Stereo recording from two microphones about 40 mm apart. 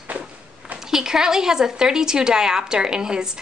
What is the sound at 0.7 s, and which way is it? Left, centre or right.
A woman's voice, centre.